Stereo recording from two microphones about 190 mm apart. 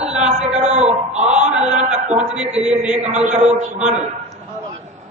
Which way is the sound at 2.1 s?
5° right (ahead or behind).